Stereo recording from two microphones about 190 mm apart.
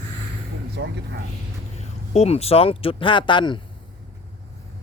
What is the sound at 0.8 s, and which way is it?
Speech, 65° right (ahead or behind).